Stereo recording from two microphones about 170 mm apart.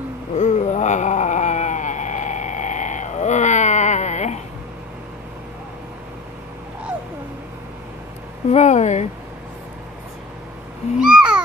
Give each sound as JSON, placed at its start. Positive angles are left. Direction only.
{"t": 0.4, "sound": "a sound", "side_deg": 45}
{"t": 8.5, "sound": "speech", "side_deg": 45}
{"t": 11.0, "sound": "owl", "side_deg": -5}